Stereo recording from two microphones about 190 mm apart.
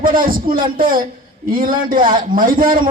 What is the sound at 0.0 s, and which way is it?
A man's voice, 45° right (ahead or behind).